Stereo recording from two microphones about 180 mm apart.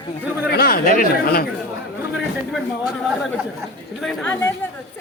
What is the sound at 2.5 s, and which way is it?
A man's voice, 5° right (ahead or behind).